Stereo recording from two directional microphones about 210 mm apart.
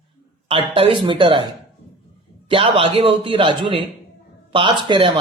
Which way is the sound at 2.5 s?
25° right (ahead or behind).